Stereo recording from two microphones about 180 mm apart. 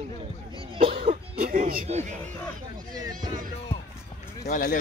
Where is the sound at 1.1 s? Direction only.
55° right (ahead or behind).